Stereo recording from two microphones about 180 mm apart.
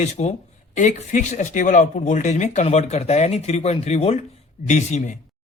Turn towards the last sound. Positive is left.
turn(degrees=40)  # may be behind; listen again after turning